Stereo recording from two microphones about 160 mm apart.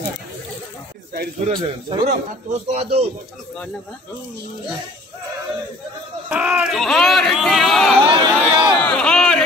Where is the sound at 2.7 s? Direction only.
40° right (ahead or behind).